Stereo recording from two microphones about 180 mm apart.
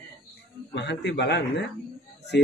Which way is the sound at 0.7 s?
75° left (ahead or behind).